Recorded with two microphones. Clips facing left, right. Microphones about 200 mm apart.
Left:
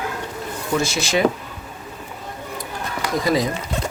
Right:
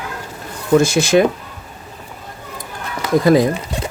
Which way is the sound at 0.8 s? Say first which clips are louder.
Right 9 dB; 50° right (ahead or behind).